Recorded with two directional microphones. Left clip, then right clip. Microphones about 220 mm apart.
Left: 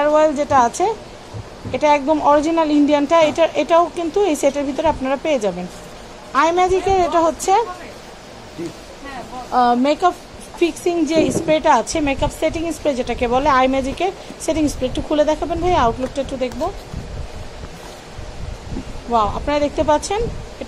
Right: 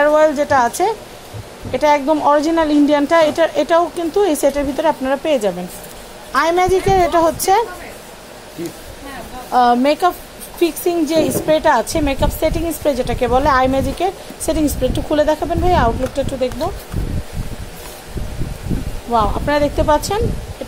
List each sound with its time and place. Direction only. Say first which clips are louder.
0.0 s a woman's voice: right 2 dB; 25° right (ahead or behind)
9.5 s a woman's voice: right 3 dB; 35° right (ahead or behind)
19.1 s a woman's voice: right 2 dB; 25° right (ahead or behind)